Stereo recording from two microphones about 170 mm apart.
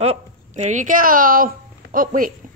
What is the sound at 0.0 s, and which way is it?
Speech, 40° right (ahead or behind).